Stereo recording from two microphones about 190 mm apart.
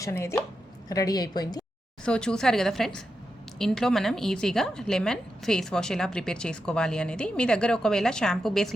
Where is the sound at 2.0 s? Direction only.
5° left (ahead or behind).